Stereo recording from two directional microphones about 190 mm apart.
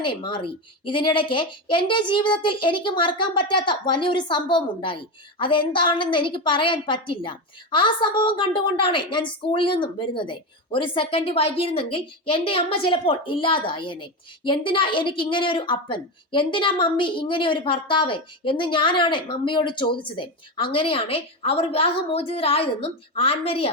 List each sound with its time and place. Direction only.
0.0 s a woman's voice: 25° left (ahead or behind)